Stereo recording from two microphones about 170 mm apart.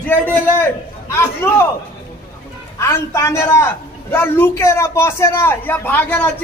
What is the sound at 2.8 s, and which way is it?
A man's voice, 15° left (ahead or behind).